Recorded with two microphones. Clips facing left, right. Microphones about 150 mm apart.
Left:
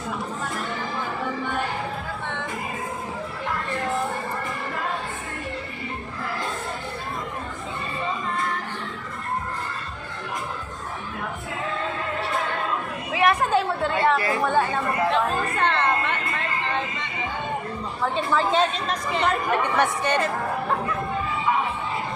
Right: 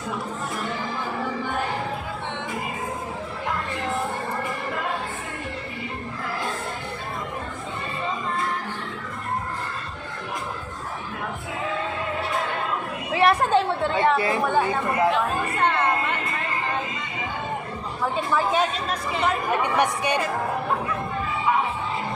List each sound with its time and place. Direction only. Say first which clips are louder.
13.1 s chatter: right 1 dB; 30° right (ahead or behind)
15.1 s chatter: left 1 dB; 5° right (ahead or behind)
18.2 s chatter: left 1 dB; 10° right (ahead or behind)